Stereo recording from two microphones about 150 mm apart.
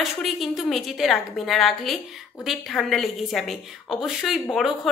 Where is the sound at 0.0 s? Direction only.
Centre (ahead or behind).